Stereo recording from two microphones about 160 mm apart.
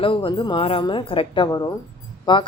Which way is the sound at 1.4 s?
25° left (ahead or behind).